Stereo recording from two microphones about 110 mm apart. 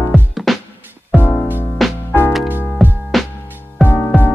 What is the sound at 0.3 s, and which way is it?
Music, centre (ahead or behind).